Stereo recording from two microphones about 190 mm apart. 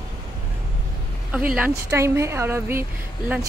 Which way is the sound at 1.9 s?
15° right (ahead or behind).